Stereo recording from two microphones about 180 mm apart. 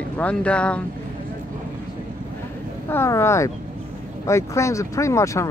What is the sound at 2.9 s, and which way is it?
Speech, 15° left (ahead or behind).